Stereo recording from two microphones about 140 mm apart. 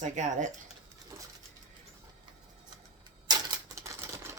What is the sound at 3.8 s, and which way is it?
Typewriter, 20° right (ahead or behind).